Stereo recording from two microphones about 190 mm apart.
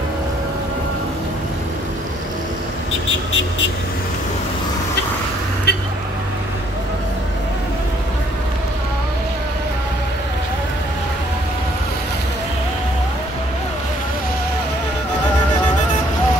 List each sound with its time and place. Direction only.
5.7 s vehicle: 60° left (ahead or behind)